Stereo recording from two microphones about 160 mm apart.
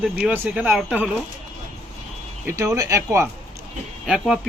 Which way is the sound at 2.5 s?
20° right (ahead or behind).